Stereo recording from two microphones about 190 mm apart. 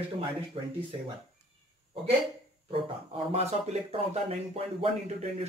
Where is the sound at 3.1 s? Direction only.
35° right (ahead or behind).